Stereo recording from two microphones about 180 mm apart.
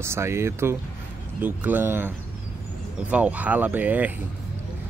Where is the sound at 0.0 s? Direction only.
15° right (ahead or behind).